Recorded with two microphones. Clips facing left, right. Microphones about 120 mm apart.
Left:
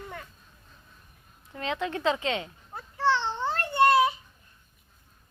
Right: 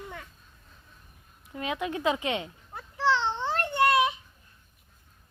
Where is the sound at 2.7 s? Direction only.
Centre (ahead or behind).